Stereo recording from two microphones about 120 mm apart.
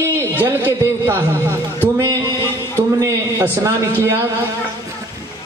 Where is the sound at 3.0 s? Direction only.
25° right (ahead or behind).